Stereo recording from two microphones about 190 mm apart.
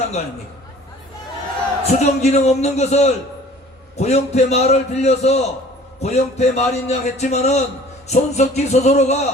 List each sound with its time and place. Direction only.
1.8 s a man's voice: 35° left (ahead or behind)